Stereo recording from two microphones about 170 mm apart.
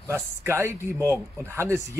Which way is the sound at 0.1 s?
15° right (ahead or behind).